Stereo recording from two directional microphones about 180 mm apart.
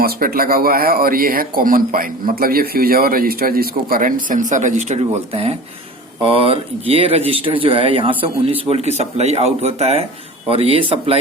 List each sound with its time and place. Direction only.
0.0 s speech: 55° right (ahead or behind); by 11.2 s 30° right (ahead or behind)